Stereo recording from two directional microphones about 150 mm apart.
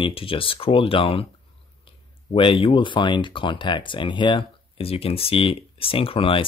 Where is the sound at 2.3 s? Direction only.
35° left (ahead or behind).